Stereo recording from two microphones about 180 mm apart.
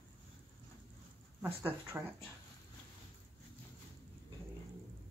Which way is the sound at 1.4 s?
10° right (ahead or behind).